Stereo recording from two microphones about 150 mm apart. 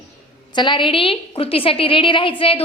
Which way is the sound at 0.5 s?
30° left (ahead or behind).